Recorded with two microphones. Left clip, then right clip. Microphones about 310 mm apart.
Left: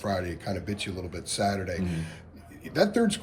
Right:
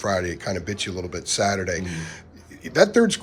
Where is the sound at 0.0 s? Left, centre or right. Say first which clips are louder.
Right 7 dB; right.